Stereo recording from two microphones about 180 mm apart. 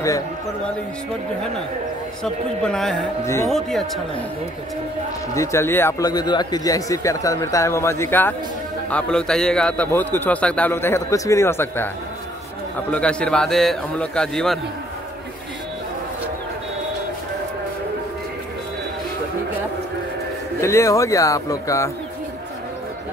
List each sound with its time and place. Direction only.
2.2 s a man's voice: 5° left (ahead or behind)
5.3 s speech: 15° left (ahead or behind)
12.9 s a man's voice: 5° left (ahead or behind)
20.6 s speech: 15° left (ahead or behind)